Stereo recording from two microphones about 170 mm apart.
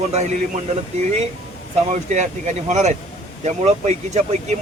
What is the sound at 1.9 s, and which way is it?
Speech, 45° right (ahead or behind).